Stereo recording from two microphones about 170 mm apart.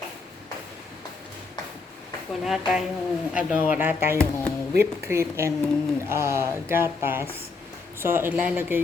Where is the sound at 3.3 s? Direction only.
5° right (ahead or behind).